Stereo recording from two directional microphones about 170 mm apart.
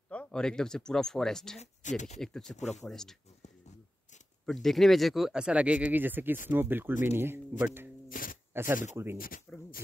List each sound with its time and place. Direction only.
0.1 s speech: 5° left (ahead or behind)
1.6 s speech: 45° left (ahead or behind)
2.1 s speech: 5° left (ahead or behind)
2.5 s speech: 40° left (ahead or behind)
2.9 s speech: 5° left (ahead or behind)
4.5 s speech: centre (ahead or behind)
8.1 s a sound: 55° left (ahead or behind)
8.9 s speech: 15° right (ahead or behind)
9.5 s speech: 10° left (ahead or behind)